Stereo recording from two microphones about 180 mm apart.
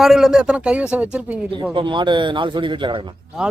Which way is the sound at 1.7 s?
25° right (ahead or behind).